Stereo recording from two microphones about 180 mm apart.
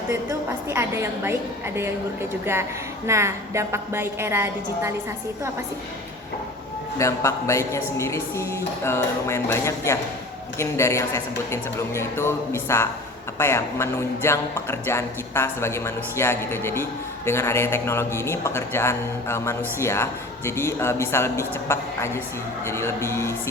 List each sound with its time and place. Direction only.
0.1 s a woman's voice: 15° right (ahead or behind)
3.1 s a woman's voice: 15° right (ahead or behind)
7.0 s speech: 15° left (ahead or behind)